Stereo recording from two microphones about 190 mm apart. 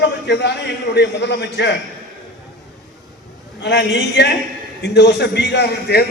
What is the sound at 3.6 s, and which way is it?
A man's voice, 70° left (ahead or behind).